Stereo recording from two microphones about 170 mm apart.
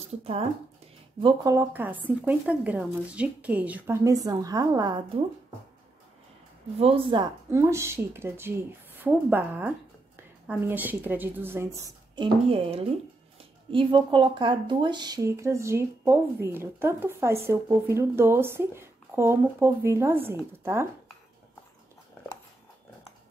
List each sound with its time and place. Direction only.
0.1 s speech: 35° right (ahead or behind)
1.2 s speech: 20° right (ahead or behind)
6.8 s speech: 35° right (ahead or behind)
7.5 s speech: 15° right (ahead or behind)
12.2 s speech: 35° right (ahead or behind); by 20.9 s 15° right (ahead or behind)